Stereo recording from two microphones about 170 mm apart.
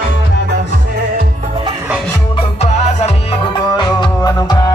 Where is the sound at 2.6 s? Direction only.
40° left (ahead or behind).